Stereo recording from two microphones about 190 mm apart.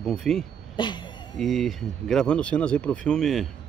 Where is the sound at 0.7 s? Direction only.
25° left (ahead or behind).